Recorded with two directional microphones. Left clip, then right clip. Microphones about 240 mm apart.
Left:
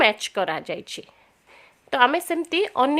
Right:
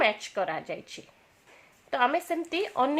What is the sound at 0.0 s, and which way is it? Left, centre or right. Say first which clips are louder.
Speech: left 6 dB; left.